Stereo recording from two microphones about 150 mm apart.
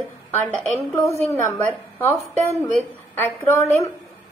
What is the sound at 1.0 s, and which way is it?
A woman's voice, 15° left (ahead or behind).